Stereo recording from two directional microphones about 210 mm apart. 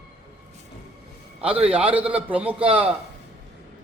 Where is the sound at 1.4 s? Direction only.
5° right (ahead or behind).